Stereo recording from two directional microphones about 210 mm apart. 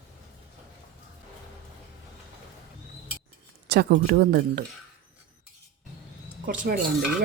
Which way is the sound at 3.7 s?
50° right (ahead or behind).